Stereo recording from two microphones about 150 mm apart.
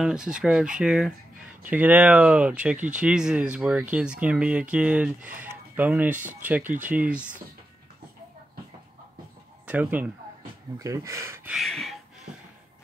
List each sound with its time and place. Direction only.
0.0 s speech: 5° right (ahead or behind)
9.7 s speech: 10° right (ahead or behind)
10.8 s speech: 20° right (ahead or behind)
11.5 s speech: centre (ahead or behind)